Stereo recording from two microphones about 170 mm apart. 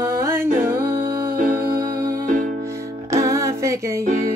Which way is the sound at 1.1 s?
60° right (ahead or behind).